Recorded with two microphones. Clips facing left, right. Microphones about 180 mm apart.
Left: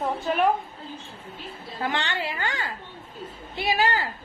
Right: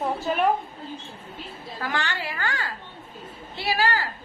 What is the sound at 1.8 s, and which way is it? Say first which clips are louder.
A woman's voice: left 2 dB; 25° left (ahead or behind).